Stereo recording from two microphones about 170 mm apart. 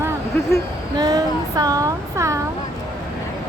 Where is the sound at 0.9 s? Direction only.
25° right (ahead or behind).